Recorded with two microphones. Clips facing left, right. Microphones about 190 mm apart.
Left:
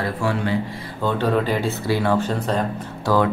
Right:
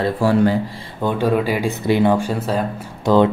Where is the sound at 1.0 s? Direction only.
15° right (ahead or behind).